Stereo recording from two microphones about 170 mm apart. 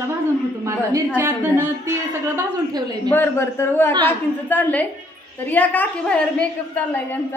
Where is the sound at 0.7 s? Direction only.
15° right (ahead or behind).